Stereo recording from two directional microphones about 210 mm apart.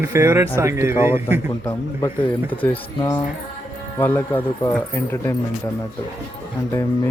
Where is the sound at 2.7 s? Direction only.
20° left (ahead or behind).